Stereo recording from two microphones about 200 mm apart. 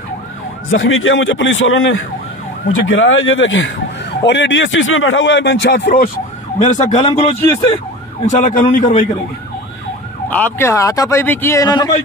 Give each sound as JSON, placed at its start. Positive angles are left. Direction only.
{"t": 0.7, "sound": "speech", "side_deg": 85}
{"t": 6.6, "sound": "speech", "side_deg": 35}
{"t": 8.3, "sound": "speech", "side_deg": 40}
{"t": 10.3, "sound": "speech", "side_deg": 10}